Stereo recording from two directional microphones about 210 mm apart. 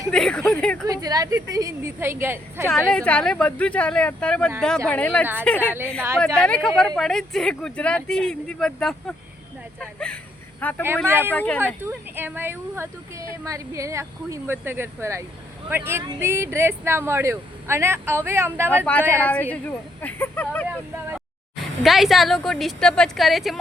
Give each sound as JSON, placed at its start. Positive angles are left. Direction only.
{"t": 0.1, "sound": "speech", "side_deg": 5}
{"t": 0.9, "sound": "a woman's voice", "side_deg": -15}
{"t": 2.6, "sound": "speech", "side_deg": 5}
{"t": 9.8, "sound": "a sound", "side_deg": 5}
{"t": 10.6, "sound": "speech", "side_deg": 10}
{"t": 10.8, "sound": "a woman's voice", "side_deg": -10}
{"t": 11.3, "sound": "speech", "side_deg": 5}
{"t": 11.6, "sound": "a woman's voice", "side_deg": -10}
{"t": 19.1, "sound": "speech", "side_deg": 10}
{"t": 21.8, "sound": "speech", "side_deg": 0}